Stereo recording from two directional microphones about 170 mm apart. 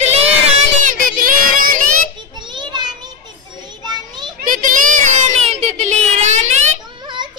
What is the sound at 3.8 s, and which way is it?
Children playing, 25° right (ahead or behind).